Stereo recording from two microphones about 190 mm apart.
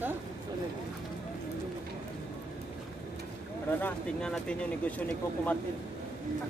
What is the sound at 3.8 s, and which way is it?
Speech, 5° left (ahead or behind).